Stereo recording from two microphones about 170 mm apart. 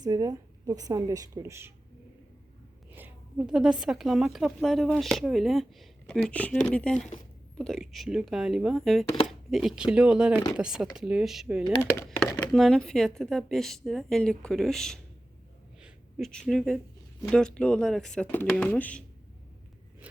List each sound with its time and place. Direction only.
0.0 s speech: 20° right (ahead or behind)
2.9 s a woman's voice: 10° right (ahead or behind)
15.8 s a sound: 5° right (ahead or behind)
16.3 s a woman's voice: 5° left (ahead or behind)